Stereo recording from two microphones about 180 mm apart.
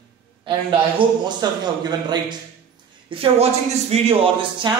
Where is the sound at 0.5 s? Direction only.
25° right (ahead or behind).